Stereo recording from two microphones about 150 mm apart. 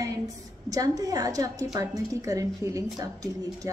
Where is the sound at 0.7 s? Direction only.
25° right (ahead or behind).